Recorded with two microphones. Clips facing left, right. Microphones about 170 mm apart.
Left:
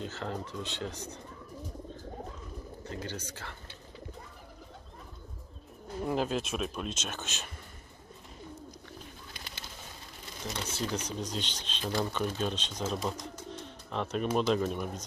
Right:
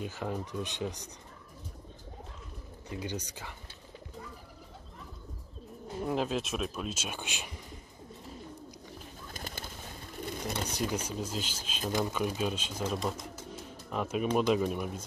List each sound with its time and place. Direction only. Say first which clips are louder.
0.0 s speech: right 1 dB; 10° right (ahead or behind)
2.9 s speech: right 3 dB; 15° right (ahead or behind)
6.0 s speech: left 1 dB; centre (ahead or behind)
9.3 s bird: right 5 dB; 45° right (ahead or behind)
10.7 s speech: right 1 dB; 10° right (ahead or behind)